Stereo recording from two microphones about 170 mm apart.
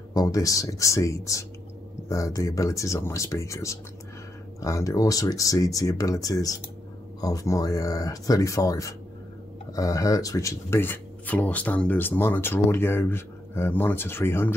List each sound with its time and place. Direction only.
0.1 s speech: 20° left (ahead or behind)